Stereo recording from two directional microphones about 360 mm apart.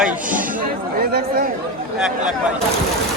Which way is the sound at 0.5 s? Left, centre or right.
Right.